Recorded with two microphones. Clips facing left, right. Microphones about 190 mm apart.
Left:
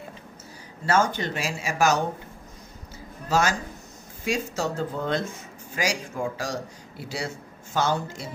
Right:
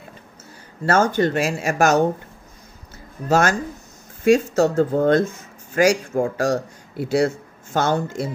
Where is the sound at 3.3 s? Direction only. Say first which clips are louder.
Right 6 dB; 55° right (ahead or behind).